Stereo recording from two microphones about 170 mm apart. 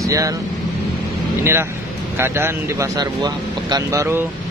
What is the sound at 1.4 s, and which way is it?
Speech, 15° right (ahead or behind).